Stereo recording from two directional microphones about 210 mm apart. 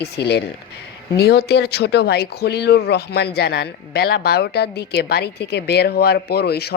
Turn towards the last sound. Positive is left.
turn(degrees=50)  # may be behind; listen again after turning